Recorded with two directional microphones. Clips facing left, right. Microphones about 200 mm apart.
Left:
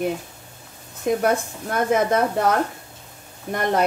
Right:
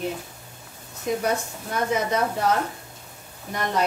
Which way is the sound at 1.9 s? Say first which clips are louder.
Left 6 dB; 55° left (ahead or behind).